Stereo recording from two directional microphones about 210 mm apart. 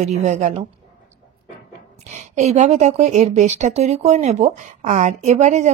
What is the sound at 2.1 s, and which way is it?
Speech, 30° right (ahead or behind).